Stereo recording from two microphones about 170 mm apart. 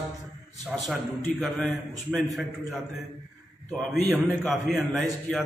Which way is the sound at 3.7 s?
Centre (ahead or behind).